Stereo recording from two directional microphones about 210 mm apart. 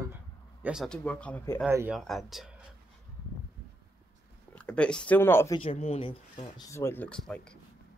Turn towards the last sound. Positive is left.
turn(degrees=5)  # may be behind; listen again after turning